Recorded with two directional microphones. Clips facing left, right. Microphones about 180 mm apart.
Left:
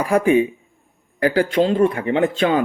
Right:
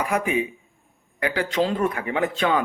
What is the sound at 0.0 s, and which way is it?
Speech, 30° left (ahead or behind).